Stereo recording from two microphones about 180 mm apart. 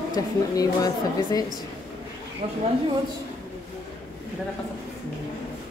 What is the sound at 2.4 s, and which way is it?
Speech, 35° right (ahead or behind).